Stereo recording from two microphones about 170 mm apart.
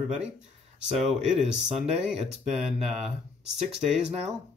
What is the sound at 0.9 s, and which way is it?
Speech, 5° right (ahead or behind).